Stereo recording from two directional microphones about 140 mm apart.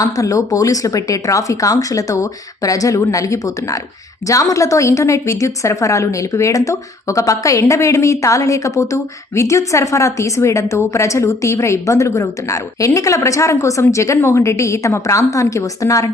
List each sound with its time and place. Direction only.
0.0 s a woman's voice: 25° left (ahead or behind)